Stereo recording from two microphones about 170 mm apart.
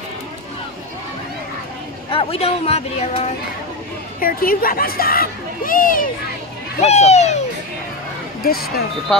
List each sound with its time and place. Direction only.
2.0 s speech: 35° left (ahead or behind)
4.2 s speech: 55° left (ahead or behind)
6.8 s a sound: 40° left (ahead or behind)
8.4 s speech: 60° left (ahead or behind)